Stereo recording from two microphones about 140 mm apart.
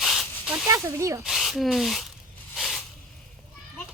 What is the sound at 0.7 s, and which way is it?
Speech, 20° right (ahead or behind).